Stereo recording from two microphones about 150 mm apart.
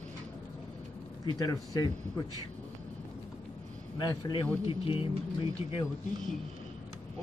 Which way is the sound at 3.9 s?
30° left (ahead or behind).